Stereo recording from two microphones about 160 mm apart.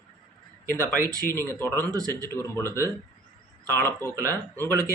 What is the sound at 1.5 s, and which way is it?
Speech, 15° left (ahead or behind).